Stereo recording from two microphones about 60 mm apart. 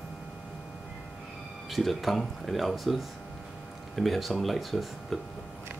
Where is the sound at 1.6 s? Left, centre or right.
Centre.